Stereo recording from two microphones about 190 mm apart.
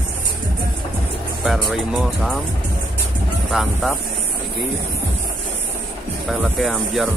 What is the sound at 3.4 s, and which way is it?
Speech, centre (ahead or behind).